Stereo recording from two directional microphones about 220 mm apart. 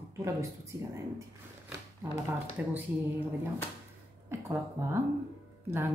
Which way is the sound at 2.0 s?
10° right (ahead or behind).